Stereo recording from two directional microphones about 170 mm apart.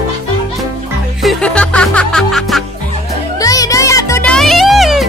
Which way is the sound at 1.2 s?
5° left (ahead or behind).